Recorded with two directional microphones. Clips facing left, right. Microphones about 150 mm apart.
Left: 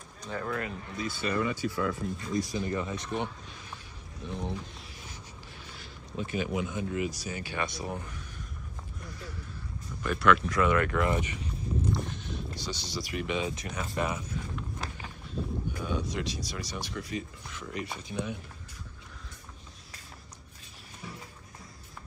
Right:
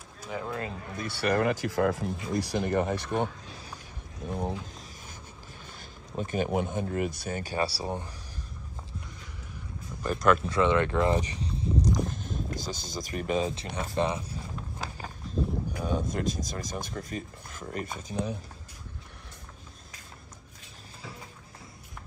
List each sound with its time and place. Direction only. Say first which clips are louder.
0.2 s speech: right 1 dB; 10° right (ahead or behind)
0.5 s speech: left 2 dB; 25° right (ahead or behind)
0.9 s speech: right 4 dB; 65° right (ahead or behind)
4.2 s a sound: right 3 dB; 45° right (ahead or behind)
5.7 s speech: even; 45° right (ahead or behind); by 8.2 s 30° right (ahead or behind)
10.0 s speech: right 1 dB; 40° right (ahead or behind)
10.4 s a sound: right 2 dB; 25° right (ahead or behind); by 12.4 s 45° right (ahead or behind)
12.5 s speech: right 1 dB; 45° right (ahead or behind); by 14.4 s 30° right (ahead or behind)
15.2 s livestock: right 5 dB; 40° right (ahead or behind)
15.8 s speech: right 4 dB; 45° right (ahead or behind)